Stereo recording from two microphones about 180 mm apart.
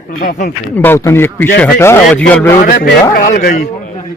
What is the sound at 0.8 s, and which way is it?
A man's voice, 15° left (ahead or behind).